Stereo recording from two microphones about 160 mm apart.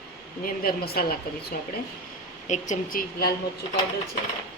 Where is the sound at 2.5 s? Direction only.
55° left (ahead or behind).